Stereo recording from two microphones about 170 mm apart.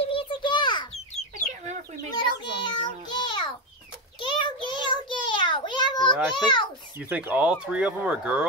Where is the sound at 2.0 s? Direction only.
25° left (ahead or behind).